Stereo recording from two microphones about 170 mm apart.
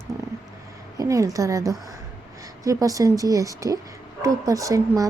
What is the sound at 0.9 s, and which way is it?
A woman's voice, 20° right (ahead or behind).